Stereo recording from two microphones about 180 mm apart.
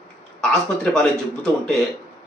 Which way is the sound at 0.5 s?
5° left (ahead or behind).